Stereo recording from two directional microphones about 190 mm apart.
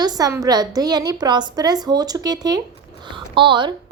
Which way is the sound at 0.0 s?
20° right (ahead or behind).